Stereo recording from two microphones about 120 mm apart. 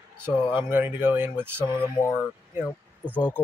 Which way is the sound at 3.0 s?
10° left (ahead or behind).